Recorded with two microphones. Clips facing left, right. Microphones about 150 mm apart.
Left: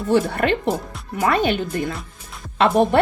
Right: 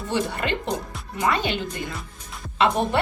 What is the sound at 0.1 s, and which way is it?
A woman's voice, 50° left (ahead or behind).